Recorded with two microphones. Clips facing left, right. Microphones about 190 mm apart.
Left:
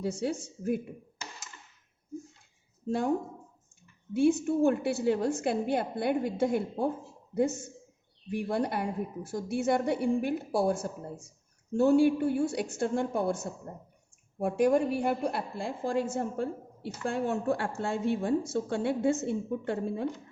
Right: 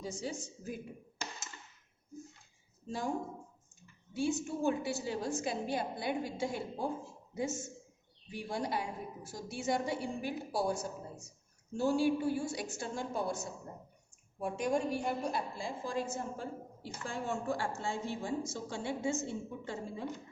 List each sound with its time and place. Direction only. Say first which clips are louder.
0.0 s a woman's voice: left 8 dB; 60° left (ahead or behind)
4.1 s a woman's voice: left 9 dB; 60° left (ahead or behind)
8.3 s a woman's voice: left 7 dB; 60° left (ahead or behind)
14.3 s a woman's voice: left 8 dB; 60° left (ahead or behind)